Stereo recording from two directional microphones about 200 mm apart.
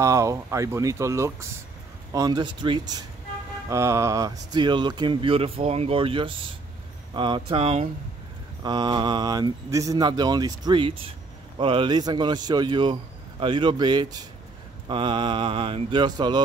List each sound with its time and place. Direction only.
0.0 s speech: 15° right (ahead or behind)